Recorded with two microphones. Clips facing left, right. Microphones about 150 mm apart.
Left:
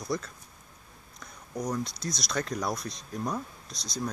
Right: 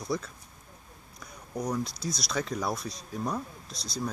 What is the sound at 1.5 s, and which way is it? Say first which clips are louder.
Speech: right 1 dB; 10° right (ahead or behind).